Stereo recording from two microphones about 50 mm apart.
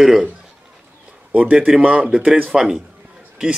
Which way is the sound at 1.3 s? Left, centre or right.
Right.